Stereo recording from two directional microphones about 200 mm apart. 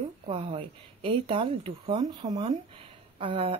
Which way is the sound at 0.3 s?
25° right (ahead or behind).